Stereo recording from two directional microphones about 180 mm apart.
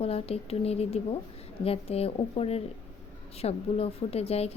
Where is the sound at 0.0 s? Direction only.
35° left (ahead or behind).